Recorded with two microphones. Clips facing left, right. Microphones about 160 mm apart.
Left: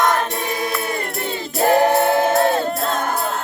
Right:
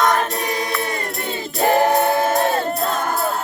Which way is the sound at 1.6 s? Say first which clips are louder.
Left 1 dB; centre (ahead or behind).